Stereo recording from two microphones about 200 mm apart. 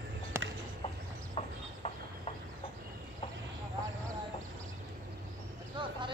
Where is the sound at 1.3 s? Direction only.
30° left (ahead or behind).